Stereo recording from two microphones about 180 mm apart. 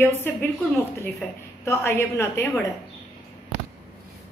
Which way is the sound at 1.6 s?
15° left (ahead or behind).